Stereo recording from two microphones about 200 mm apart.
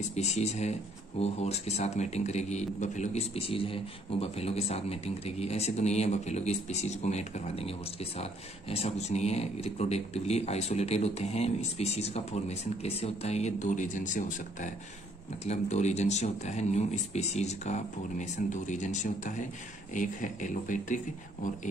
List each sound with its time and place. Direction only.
0.1 s a man's voice: 35° left (ahead or behind)